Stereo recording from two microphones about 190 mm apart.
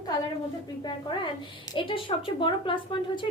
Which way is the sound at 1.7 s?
25° left (ahead or behind).